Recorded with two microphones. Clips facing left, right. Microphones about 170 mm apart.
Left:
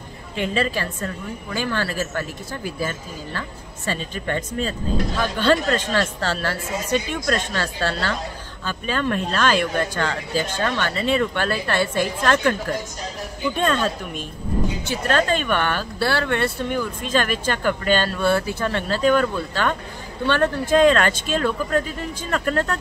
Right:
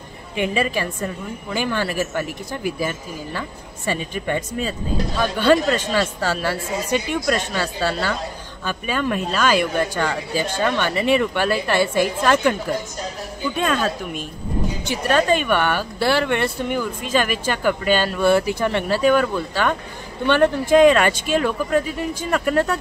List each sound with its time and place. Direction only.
0.4 s speech: 15° right (ahead or behind)
13.6 s speech: 5° right (ahead or behind)